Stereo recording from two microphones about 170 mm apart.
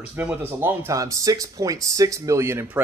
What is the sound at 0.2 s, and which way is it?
Speech, 10° right (ahead or behind).